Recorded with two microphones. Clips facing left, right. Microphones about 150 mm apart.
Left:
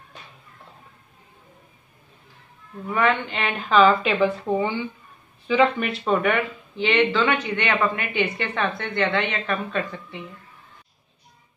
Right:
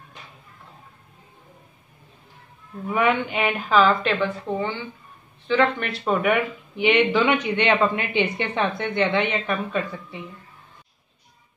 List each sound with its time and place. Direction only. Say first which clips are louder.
2.9 s a woman's voice: right 1 dB; 15° right (ahead or behind); by 5.9 s 10° left (ahead or behind)
5.9 s speech: even; centre (ahead or behind)